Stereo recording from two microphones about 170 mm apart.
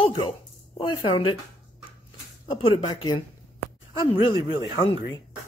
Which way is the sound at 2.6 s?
30° left (ahead or behind).